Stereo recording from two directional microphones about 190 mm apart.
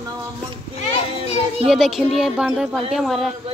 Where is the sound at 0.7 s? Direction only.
35° left (ahead or behind).